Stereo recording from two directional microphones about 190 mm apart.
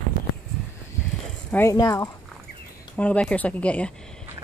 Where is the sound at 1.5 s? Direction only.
15° left (ahead or behind).